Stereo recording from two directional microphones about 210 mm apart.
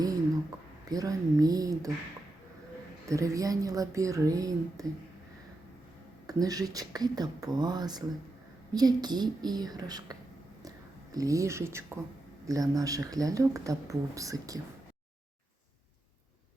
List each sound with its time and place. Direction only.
0.9 s speech: 15° right (ahead or behind)
3.1 s speech: 15° right (ahead or behind)
6.2 s speech: 15° right (ahead or behind)
10.6 s a sound: 15° right (ahead or behind)
12.5 s speech: 15° right (ahead or behind)